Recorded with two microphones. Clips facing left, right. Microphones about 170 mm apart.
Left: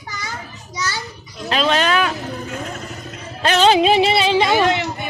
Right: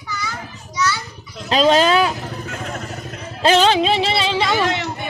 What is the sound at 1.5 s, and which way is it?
Speech, 35° right (ahead or behind).